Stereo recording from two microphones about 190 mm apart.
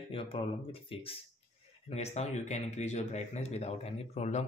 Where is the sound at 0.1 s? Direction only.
30° left (ahead or behind).